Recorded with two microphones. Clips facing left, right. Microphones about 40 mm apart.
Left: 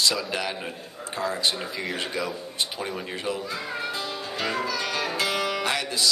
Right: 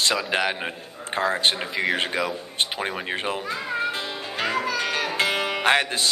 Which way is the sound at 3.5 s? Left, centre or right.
Right.